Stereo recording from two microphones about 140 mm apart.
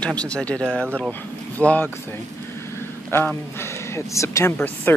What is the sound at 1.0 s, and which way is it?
Speech, 10° left (ahead or behind).